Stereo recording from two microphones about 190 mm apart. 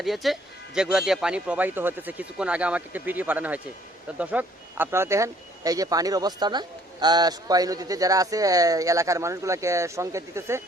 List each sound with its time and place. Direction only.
0.0 s speech: centre (ahead or behind)